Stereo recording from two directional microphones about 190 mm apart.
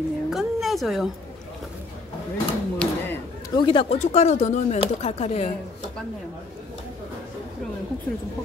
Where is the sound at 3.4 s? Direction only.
25° left (ahead or behind).